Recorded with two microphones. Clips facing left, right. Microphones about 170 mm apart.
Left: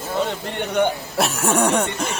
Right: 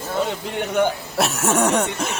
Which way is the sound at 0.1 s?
Centre (ahead or behind).